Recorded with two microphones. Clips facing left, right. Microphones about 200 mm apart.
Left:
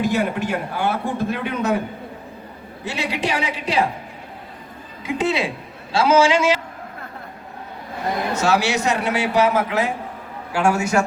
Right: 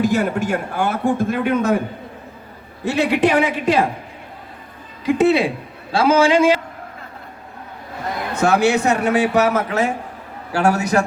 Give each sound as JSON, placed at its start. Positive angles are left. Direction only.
{"t": 0.0, "sound": "a man's voice", "side_deg": -45}
{"t": 2.8, "sound": "a man's voice", "side_deg": -55}
{"t": 5.1, "sound": "a man's voice", "side_deg": -60}
{"t": 8.3, "sound": "a man's voice", "side_deg": -60}